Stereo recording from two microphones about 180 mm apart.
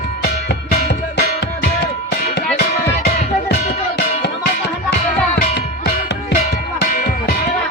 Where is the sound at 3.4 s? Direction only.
60° left (ahead or behind).